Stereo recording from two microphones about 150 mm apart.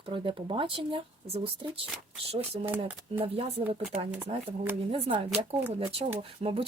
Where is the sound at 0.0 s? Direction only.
35° right (ahead or behind).